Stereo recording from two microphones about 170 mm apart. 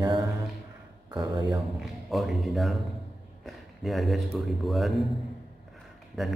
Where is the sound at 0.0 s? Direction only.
25° right (ahead or behind).